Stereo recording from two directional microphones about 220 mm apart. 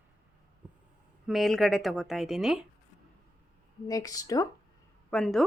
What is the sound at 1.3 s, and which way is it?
Speech, centre (ahead or behind).